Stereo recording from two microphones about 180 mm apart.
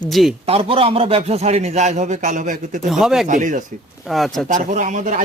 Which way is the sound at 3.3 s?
45° right (ahead or behind).